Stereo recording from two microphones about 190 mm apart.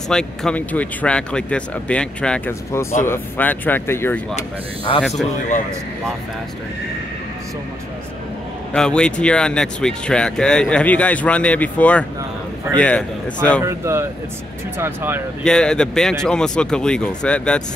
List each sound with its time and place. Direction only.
0.1 s speech: 5° left (ahead or behind)
4.4 s speech: 30° left (ahead or behind)
8.7 s speech: 5° left (ahead or behind)
13.6 s speech: 15° right (ahead or behind)
15.4 s speech: 5° left (ahead or behind)